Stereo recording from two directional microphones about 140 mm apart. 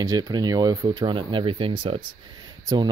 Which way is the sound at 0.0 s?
25° right (ahead or behind).